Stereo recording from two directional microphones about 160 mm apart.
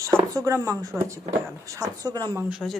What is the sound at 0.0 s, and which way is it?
Speech, 15° right (ahead or behind).